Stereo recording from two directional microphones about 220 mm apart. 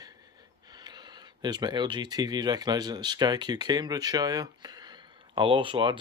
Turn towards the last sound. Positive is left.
turn(degrees=-20)  # may be behind; listen again after turning